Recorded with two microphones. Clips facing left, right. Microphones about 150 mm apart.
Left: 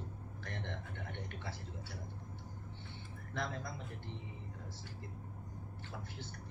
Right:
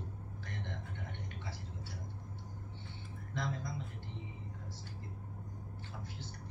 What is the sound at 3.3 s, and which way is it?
Speech, 60° left (ahead or behind).